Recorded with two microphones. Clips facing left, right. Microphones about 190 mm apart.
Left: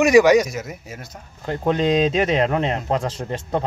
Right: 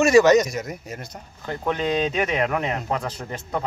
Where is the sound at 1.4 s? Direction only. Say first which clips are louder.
Left 5 dB; 30° left (ahead or behind).